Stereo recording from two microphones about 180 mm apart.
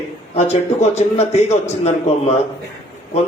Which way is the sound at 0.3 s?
35° left (ahead or behind).